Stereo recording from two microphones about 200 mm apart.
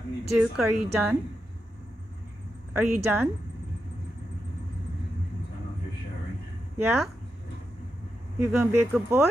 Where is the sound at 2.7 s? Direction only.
10° right (ahead or behind).